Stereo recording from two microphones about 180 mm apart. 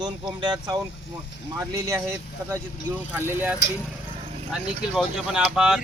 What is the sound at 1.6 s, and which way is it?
Speech, 15° right (ahead or behind).